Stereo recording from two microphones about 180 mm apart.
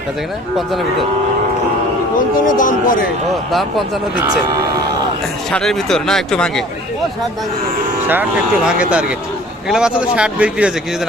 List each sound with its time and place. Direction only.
2.6 s speech: 50° left (ahead or behind)
3.5 s speech: centre (ahead or behind)
5.5 s speech: 5° left (ahead or behind)
8.0 s speech: 10° right (ahead or behind)